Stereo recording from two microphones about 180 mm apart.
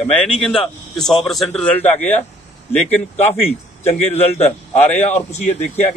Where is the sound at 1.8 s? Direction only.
40° left (ahead or behind).